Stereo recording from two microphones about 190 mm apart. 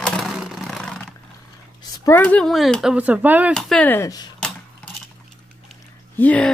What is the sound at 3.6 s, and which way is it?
Speech, 5° left (ahead or behind).